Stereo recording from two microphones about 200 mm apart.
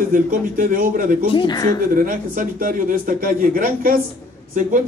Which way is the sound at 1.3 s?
20° left (ahead or behind).